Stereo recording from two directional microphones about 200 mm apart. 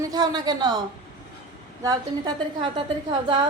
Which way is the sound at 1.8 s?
20° right (ahead or behind).